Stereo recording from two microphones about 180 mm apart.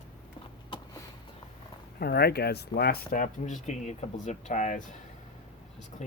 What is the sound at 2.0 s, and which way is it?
Speech, 60° left (ahead or behind).